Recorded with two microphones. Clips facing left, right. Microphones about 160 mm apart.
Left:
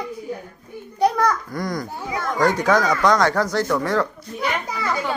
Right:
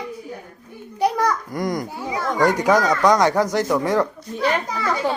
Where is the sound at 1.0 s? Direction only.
10° right (ahead or behind).